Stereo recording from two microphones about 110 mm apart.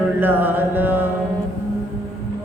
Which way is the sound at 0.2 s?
20° right (ahead or behind).